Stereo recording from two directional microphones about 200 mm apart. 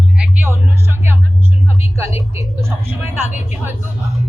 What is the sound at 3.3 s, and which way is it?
Speech, 35° left (ahead or behind).